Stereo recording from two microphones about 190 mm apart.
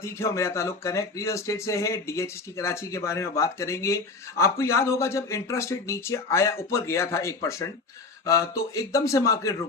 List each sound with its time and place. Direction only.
0.0 s speech: 15° left (ahead or behind)